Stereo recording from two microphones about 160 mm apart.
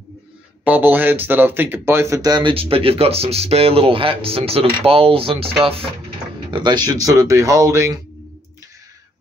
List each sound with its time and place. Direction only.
0.7 s speech: 10° right (ahead or behind); by 5.5 s 35° right (ahead or behind)
6.5 s speech: 25° right (ahead or behind)